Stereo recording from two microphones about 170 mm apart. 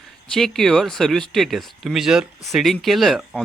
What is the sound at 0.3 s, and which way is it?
Speech, 5° left (ahead or behind).